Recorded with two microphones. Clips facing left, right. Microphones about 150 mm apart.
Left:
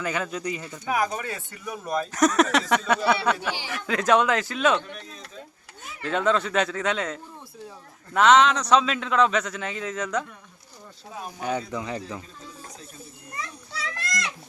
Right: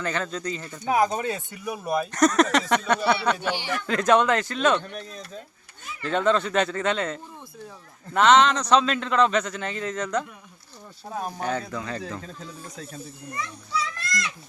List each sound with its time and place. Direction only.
0.0 s speech: 10° left (ahead or behind)
0.9 s speech: 25° right (ahead or behind)
2.1 s a man's voice: 5° left (ahead or behind)
5.8 s a man's voice: 5° left (ahead or behind)
11.3 s speech: 15° left (ahead or behind)
13.7 s goat: 90° left